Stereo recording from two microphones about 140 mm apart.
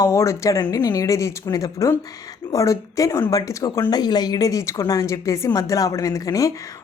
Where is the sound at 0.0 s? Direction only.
20° left (ahead or behind).